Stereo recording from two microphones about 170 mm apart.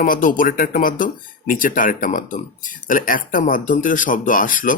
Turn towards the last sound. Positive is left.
turn(degrees=50)  # may be behind; listen again after turning